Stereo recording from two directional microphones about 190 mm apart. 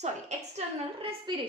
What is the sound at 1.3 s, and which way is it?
Speech, 25° right (ahead or behind).